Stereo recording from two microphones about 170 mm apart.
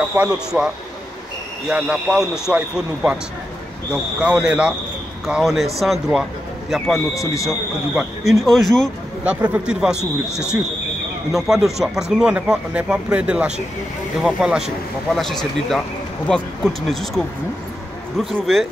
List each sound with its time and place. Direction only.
0.1 s a man's voice: 5° right (ahead or behind)
1.7 s a man's voice: 5° right (ahead or behind)
7.4 s a man's voice: centre (ahead or behind)
9.9 s speech: 15° left (ahead or behind)
11.3 s a man's voice: centre (ahead or behind)